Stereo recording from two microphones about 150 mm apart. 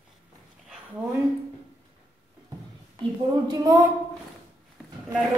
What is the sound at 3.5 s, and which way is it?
Speech, 20° right (ahead or behind).